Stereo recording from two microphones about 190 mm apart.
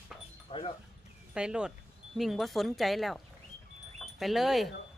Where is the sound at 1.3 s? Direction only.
5° right (ahead or behind).